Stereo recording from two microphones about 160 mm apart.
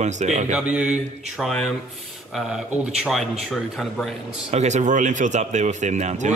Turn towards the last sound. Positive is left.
turn(degrees=-45)  # may be behind; listen again after turning